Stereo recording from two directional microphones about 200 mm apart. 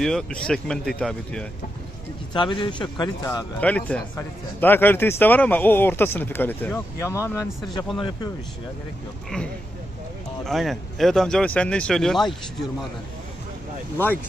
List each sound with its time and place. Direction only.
0.0 s speech: 5° left (ahead or behind)
2.3 s speech: 25° left (ahead or behind)
3.6 s speech: 5° left (ahead or behind)
10.4 s speech: centre (ahead or behind)